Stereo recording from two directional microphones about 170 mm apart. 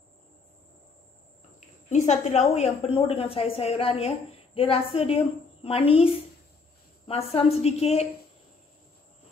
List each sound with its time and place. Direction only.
1.9 s a woman's voice: 40° left (ahead or behind)